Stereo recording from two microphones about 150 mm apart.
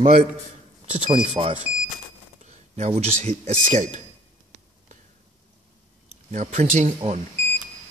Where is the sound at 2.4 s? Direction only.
50° right (ahead or behind).